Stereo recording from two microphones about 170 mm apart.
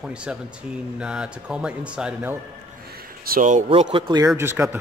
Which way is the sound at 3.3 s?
50° right (ahead or behind).